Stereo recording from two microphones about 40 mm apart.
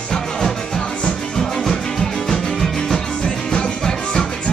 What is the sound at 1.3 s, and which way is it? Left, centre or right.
Music, centre.